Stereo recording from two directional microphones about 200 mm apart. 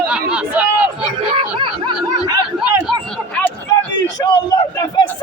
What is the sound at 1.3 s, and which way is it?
Speech, 25° right (ahead or behind).